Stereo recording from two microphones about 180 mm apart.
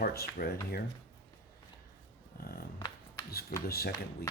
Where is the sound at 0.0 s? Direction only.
60° left (ahead or behind).